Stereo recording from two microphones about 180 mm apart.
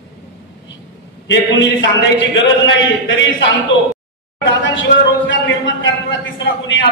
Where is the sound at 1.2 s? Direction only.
85° left.